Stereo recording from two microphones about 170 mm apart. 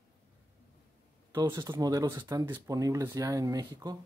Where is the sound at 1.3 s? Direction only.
25° right (ahead or behind).